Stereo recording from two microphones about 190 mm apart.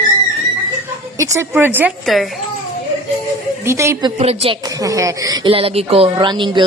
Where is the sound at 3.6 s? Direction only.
15° right (ahead or behind).